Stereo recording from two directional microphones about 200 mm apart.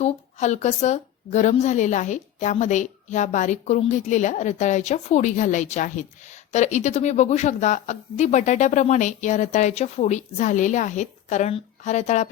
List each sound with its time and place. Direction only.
0.0 s a woman's voice: 35° left (ahead or behind)